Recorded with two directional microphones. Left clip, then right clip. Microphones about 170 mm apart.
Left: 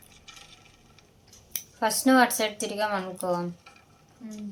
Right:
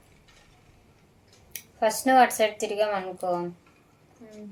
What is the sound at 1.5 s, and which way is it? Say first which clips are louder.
Speech: right 2 dB; 15° right (ahead or behind).